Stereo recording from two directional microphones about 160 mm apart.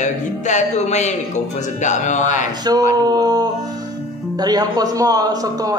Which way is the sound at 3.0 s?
25° right (ahead or behind).